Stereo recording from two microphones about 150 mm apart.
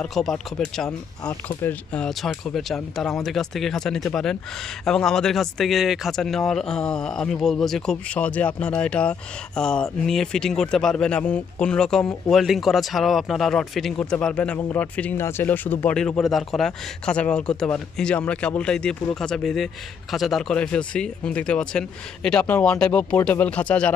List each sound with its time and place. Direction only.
0.0 s speech: 5° left (ahead or behind)